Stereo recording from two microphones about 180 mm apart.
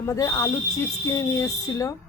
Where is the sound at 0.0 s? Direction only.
15° left (ahead or behind).